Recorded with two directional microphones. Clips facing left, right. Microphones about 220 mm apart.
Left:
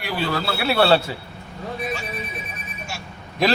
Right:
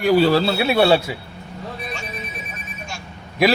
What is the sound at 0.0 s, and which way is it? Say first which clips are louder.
Speech: right 10 dB; 40° right (ahead or behind).